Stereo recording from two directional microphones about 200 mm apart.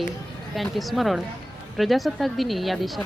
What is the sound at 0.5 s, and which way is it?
Speech, centre (ahead or behind).